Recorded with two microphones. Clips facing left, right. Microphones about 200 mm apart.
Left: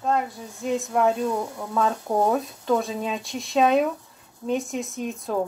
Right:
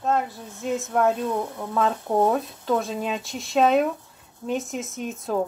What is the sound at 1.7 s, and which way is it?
A woman's voice, 5° right (ahead or behind).